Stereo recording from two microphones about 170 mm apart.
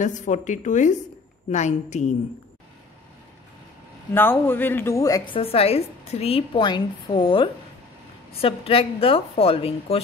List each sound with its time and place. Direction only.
0.0 s a woman's voice: 45° left (ahead or behind)
4.1 s a woman's voice: 10° left (ahead or behind); by 10.0 s 35° left (ahead or behind)